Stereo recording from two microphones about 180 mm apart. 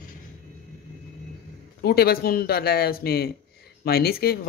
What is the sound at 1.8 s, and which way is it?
Speech, 60° left (ahead or behind).